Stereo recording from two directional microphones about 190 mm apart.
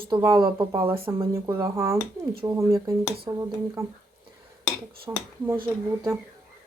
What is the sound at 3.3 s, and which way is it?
Speech, 35° right (ahead or behind).